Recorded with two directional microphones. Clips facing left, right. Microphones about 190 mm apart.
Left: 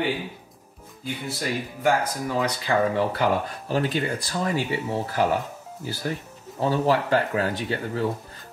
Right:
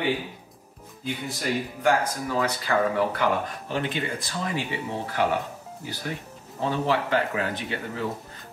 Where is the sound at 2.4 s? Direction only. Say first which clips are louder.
Left 1 dB; 25° left (ahead or behind).